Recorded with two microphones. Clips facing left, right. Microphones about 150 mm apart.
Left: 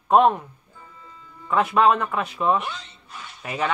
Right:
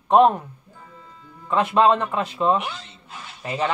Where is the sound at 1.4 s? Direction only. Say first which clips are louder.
Right 1 dB; 25° right (ahead or behind).